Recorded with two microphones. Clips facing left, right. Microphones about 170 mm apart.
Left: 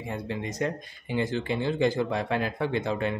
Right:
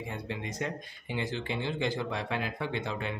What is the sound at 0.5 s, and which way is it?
Speech, 40° left (ahead or behind).